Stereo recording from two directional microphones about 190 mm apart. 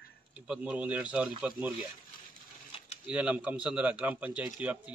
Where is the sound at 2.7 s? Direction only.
35° left (ahead or behind).